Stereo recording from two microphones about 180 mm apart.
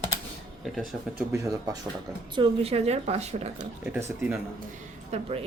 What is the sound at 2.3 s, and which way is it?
A woman's voice, 30° right (ahead or behind).